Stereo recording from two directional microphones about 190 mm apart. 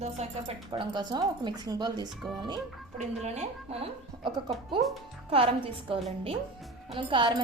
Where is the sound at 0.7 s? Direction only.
25° right (ahead or behind).